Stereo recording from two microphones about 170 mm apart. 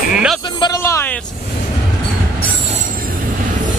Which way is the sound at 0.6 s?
20° left (ahead or behind).